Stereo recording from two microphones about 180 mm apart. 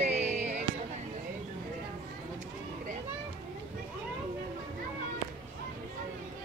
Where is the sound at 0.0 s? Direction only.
40° right (ahead or behind).